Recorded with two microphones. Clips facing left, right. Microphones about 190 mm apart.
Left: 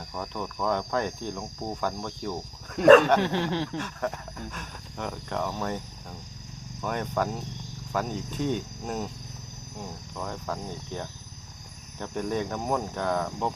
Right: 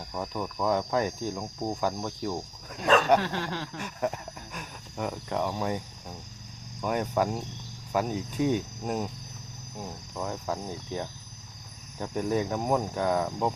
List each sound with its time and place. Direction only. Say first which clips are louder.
0.1 s speech: right 2 dB; 10° right (ahead or behind)
2.8 s speech: left 12 dB; 65° left (ahead or behind)
3.2 s speech: left 5 dB; 20° left (ahead or behind)
3.8 s speech: even; 15° right (ahead or behind)
6.8 s speech: right 2 dB; 10° right (ahead or behind)
10.2 s speech: right 2 dB; 10° right (ahead or behind)